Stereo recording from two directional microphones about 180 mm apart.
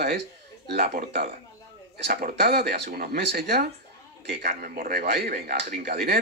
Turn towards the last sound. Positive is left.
turn(degrees=-60)  # may be behind; listen again after turning